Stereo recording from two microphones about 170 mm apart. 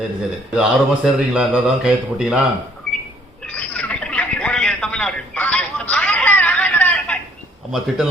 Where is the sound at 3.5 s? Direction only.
5° left (ahead or behind).